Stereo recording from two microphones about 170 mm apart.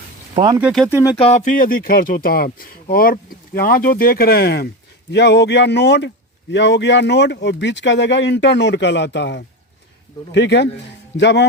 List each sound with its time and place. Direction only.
0.6 s speech: centre (ahead or behind)
1.2 s speech: 40° left (ahead or behind); by 4.7 s 65° left (ahead or behind)
5.1 s speech: 90° left